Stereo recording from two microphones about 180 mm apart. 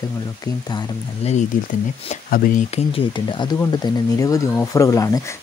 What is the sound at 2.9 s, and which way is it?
Speech, 25° left (ahead or behind).